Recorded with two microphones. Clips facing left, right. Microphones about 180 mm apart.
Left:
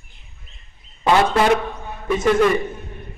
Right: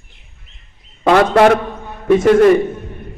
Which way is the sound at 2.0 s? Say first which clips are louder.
Right 7 dB; 55° right (ahead or behind).